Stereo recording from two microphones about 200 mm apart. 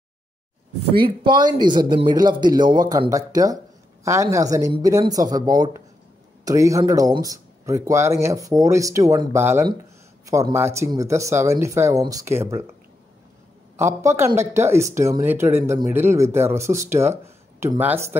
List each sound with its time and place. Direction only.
0.9 s speech: 25° right (ahead or behind)
13.7 s speech: 15° right (ahead or behind)